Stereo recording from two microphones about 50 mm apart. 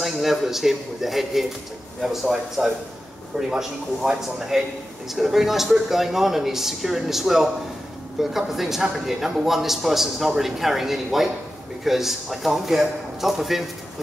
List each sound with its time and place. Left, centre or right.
0.0 s a man's voice: centre